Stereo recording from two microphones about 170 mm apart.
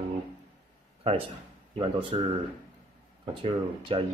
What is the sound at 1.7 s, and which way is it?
Speech, 30° right (ahead or behind).